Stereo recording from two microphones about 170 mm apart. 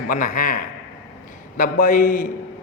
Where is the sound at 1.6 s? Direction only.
55° left (ahead or behind).